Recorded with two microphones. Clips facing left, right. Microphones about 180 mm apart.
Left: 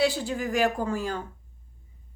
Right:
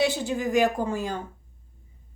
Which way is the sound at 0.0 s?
20° right (ahead or behind).